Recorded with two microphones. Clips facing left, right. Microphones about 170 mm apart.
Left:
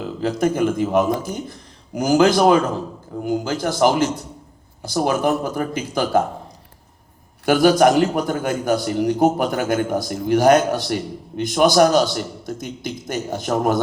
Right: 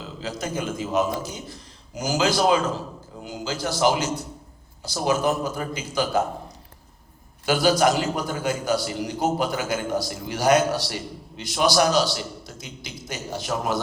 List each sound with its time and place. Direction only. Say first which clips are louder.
0.0 s a man's voice: left 11 dB; 55° left (ahead or behind)
7.4 s a man's voice: left 6 dB; 50° left (ahead or behind)